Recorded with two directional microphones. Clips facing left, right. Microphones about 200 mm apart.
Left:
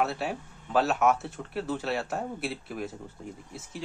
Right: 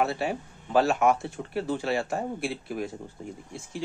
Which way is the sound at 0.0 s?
Centre (ahead or behind).